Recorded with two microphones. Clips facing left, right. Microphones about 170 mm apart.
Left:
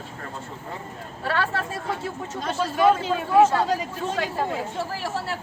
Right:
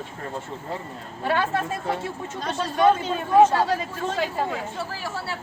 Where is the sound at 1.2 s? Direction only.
20° right (ahead or behind).